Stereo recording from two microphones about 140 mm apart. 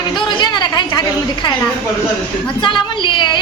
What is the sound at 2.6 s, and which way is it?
Speech, 35° left (ahead or behind).